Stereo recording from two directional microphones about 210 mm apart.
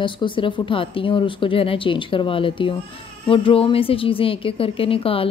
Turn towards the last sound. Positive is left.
turn(degrees=25)  # may be behind; listen again after turning